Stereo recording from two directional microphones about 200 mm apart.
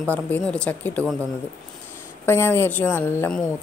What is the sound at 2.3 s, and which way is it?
Speech, 10° left (ahead or behind).